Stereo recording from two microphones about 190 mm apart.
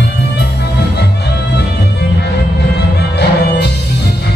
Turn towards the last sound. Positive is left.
turn(degrees=60)  # may be behind; listen again after turning